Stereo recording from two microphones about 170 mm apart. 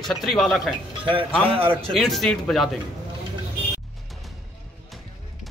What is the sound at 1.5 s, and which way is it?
Speech, 30° right (ahead or behind).